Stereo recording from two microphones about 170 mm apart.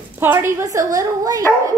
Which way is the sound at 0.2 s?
10° right (ahead or behind).